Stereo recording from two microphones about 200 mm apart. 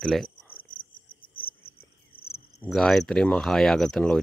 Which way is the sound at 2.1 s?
50° left (ahead or behind).